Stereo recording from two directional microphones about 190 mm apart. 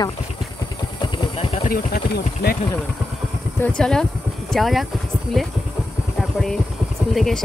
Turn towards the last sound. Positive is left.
turn(degrees=0)  # may be behind; listen again after turning